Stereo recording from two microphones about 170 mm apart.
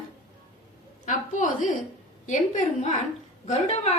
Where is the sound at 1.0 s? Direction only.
50° left (ahead or behind).